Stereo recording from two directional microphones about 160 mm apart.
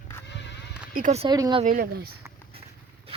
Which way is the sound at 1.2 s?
25° right (ahead or behind).